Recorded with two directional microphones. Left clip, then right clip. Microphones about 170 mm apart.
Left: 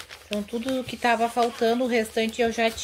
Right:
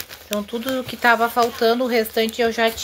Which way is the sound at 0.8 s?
10° left (ahead or behind).